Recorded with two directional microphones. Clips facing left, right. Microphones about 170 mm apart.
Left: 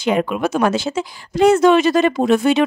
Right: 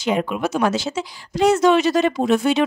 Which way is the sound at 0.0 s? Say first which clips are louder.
Left 3 dB; 60° left (ahead or behind).